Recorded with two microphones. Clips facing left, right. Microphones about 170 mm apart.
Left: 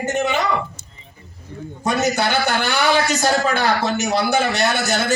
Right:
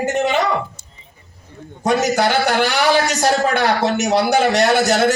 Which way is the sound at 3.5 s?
75° right (ahead or behind).